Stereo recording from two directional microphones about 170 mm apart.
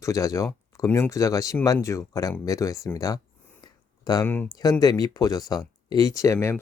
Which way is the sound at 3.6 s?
25° left (ahead or behind).